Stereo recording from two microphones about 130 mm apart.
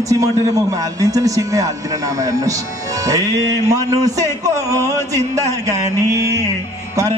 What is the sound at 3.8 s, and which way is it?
A man's voice, 25° right (ahead or behind).